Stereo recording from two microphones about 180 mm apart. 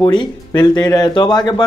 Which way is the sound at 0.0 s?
25° left (ahead or behind).